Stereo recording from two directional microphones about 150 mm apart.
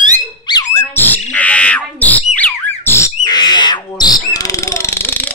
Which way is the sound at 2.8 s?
15° left (ahead or behind).